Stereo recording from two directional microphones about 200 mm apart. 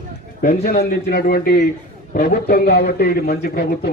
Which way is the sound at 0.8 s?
50° left (ahead or behind).